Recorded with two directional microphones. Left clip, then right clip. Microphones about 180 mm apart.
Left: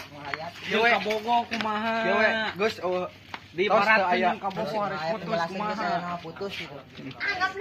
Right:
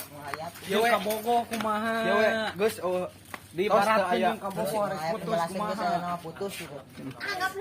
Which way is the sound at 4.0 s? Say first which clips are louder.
Left 2 dB; 25° right (ahead or behind).